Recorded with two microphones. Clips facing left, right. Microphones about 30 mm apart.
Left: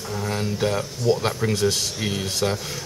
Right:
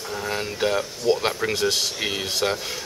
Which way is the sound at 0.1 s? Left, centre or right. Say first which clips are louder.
Left 1 dB; centre.